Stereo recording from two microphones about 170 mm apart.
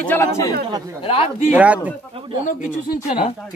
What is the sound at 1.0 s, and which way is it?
Speech, 35° left (ahead or behind).